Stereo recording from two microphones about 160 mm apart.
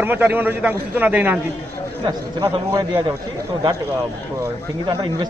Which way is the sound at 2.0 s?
25° right (ahead or behind).